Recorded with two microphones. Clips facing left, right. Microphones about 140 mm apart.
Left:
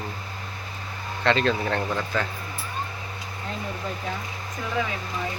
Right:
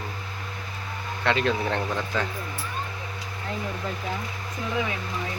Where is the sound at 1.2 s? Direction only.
10° right (ahead or behind).